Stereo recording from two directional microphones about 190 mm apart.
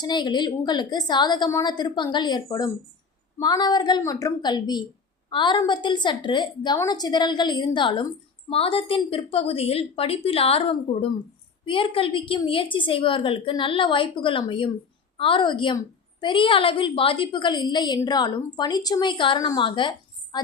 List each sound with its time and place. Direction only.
0.0 s a woman's voice: 25° left (ahead or behind)